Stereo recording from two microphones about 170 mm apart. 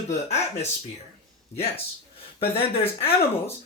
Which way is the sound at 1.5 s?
35° left (ahead or behind).